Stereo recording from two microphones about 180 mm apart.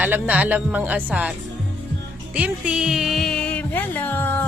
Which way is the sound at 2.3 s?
5° right (ahead or behind).